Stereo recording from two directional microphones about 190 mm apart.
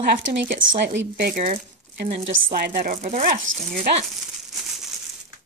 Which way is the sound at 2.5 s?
55° right (ahead or behind).